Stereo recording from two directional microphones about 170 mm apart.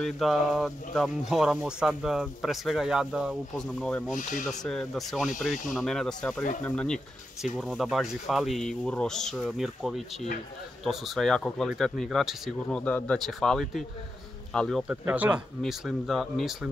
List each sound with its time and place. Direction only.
0.0 s speech: centre (ahead or behind)
4.1 s speech: 50° left (ahead or behind)
4.5 s speech: 5° left (ahead or behind)
15.0 s speech: 10° right (ahead or behind)